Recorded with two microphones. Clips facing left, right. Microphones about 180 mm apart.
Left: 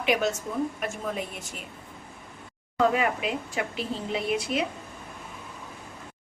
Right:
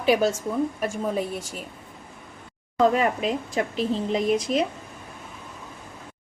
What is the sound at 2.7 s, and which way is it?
A woman's voice, 35° right (ahead or behind).